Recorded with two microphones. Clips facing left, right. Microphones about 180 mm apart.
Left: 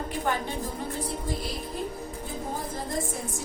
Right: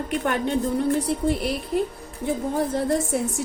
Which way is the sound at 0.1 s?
70° right (ahead or behind).